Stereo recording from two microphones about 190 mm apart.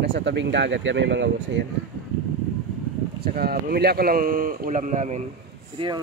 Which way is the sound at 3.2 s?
50° right (ahead or behind).